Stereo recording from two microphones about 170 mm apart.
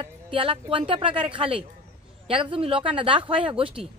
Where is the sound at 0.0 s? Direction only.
30° right (ahead or behind).